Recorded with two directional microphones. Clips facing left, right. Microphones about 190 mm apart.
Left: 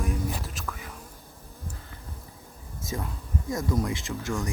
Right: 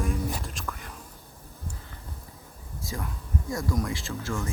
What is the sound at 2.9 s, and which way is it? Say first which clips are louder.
Speech: left 1 dB; 20° left (ahead or behind).